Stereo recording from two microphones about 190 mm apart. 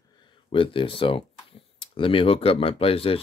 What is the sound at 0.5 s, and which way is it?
Speech, 25° left (ahead or behind).